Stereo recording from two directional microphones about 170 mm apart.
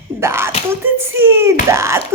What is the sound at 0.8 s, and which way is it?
A woman's voice, 15° right (ahead or behind).